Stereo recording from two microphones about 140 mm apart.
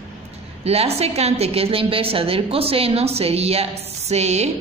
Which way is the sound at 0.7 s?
45° right (ahead or behind).